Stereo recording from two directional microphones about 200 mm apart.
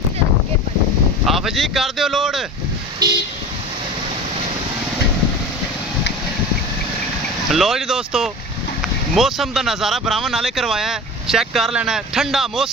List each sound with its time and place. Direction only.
1.2 s speech: centre (ahead or behind)
3.0 s vehicle: 20° right (ahead or behind)
7.5 s speech: centre (ahead or behind)